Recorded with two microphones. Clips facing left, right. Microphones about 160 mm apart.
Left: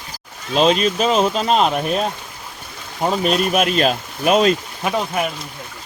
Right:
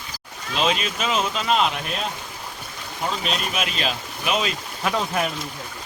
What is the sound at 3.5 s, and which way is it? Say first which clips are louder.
Speech: left 10 dB; 50° left (ahead or behind).